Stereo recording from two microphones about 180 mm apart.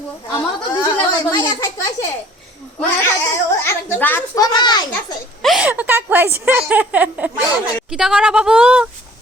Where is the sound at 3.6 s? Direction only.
10° left (ahead or behind).